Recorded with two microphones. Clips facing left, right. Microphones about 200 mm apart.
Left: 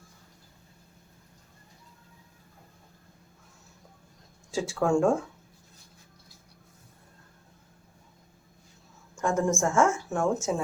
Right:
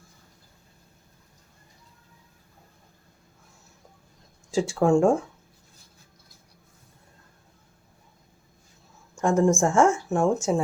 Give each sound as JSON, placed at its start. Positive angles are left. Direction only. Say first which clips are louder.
{"t": 4.5, "sound": "speech", "louder": "right 5 dB", "side_deg": -30}
{"t": 9.2, "sound": "speech", "louder": "right 5 dB", "side_deg": -30}